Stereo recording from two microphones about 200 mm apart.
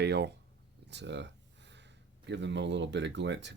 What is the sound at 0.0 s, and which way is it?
Speech, 55° right (ahead or behind).